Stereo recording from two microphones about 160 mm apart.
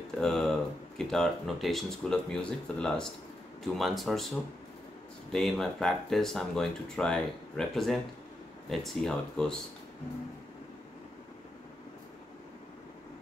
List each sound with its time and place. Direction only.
0.2 s speech: centre (ahead or behind)
5.3 s speech: 5° left (ahead or behind)